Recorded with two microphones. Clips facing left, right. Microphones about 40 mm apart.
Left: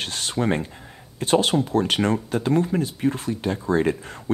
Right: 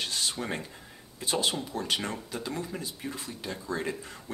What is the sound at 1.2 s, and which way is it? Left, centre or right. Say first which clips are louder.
Speech: left 10 dB; left.